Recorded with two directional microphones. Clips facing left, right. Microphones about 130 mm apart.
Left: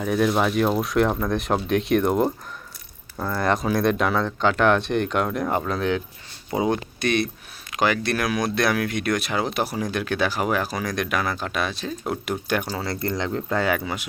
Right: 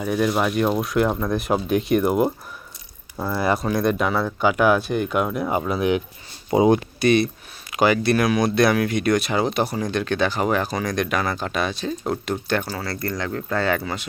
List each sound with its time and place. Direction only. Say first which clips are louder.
0.0 s speech: even; centre (ahead or behind); by 6.7 s 15° right (ahead or behind)
7.0 s speech: right 5 dB; centre (ahead or behind)